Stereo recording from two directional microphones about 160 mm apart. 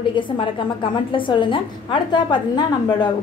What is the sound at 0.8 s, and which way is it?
A woman's voice, 30° left (ahead or behind).